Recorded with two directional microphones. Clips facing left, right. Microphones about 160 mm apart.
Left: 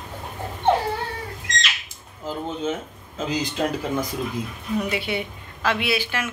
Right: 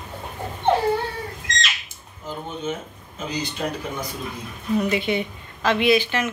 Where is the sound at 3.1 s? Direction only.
90° left.